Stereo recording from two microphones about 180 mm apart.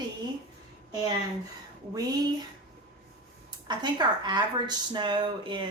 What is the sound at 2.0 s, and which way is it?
Speech, 20° right (ahead or behind).